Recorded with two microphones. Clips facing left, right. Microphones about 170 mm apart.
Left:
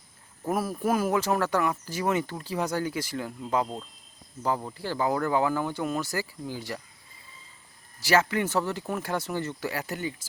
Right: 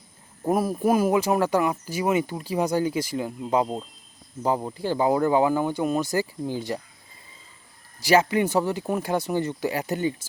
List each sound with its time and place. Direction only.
0.4 s speech: 15° right (ahead or behind)
8.0 s speech: 15° right (ahead or behind)